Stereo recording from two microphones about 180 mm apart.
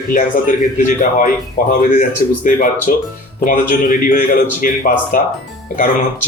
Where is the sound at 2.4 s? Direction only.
50° left (ahead or behind).